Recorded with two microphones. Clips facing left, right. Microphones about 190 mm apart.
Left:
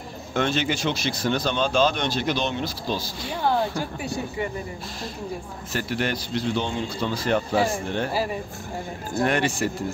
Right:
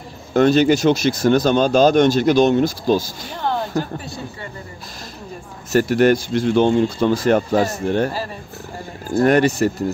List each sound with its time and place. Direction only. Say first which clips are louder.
0.3 s speech: right 11 dB; 40° right (ahead or behind)
4.0 s speech: left 4 dB; 15° left (ahead or behind)
5.7 s speech: right 12 dB; 45° right (ahead or behind)
9.2 s speech: right 8 dB; 40° right (ahead or behind)